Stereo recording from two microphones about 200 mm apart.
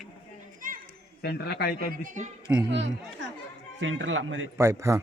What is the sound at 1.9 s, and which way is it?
Speech, 40° right (ahead or behind).